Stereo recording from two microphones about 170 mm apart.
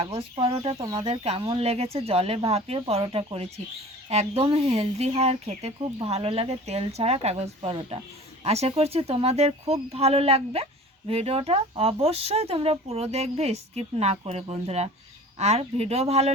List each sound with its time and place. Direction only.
0.0 s speech: 35° right (ahead or behind)